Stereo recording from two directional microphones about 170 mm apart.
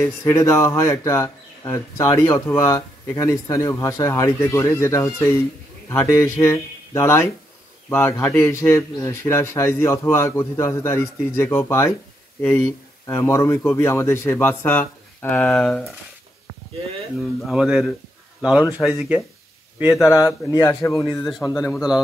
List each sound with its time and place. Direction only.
0.0 s speech: 15° left (ahead or behind)
17.2 s speech: centre (ahead or behind)
20.1 s speech: 20° left (ahead or behind)
21.7 s speech: 5° right (ahead or behind)